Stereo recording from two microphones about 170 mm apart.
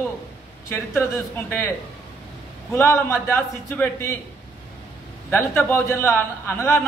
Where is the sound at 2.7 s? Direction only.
15° left (ahead or behind).